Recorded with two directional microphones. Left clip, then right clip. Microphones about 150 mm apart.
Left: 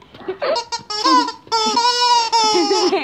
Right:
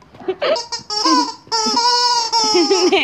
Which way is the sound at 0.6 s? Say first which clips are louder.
Even; 15° left (ahead or behind).